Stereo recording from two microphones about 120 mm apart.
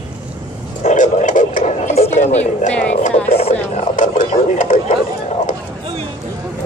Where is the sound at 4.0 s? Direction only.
90° left.